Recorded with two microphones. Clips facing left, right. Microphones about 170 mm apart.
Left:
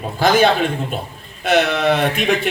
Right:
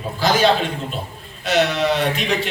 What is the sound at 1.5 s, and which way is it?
Speech, 55° left (ahead or behind).